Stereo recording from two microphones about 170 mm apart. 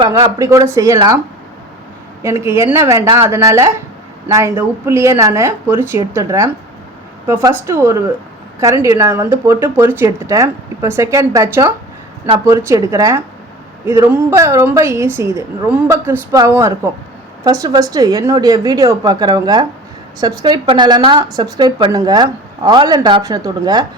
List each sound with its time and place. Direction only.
0.0 s speech: 25° right (ahead or behind)
2.4 s speech: 15° right (ahead or behind)